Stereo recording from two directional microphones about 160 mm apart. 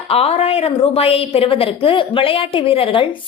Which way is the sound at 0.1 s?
40° left (ahead or behind).